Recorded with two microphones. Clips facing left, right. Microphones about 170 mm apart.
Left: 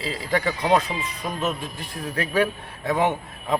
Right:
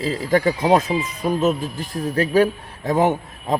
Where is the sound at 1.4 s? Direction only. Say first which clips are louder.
Right 7 dB; 40° right (ahead or behind).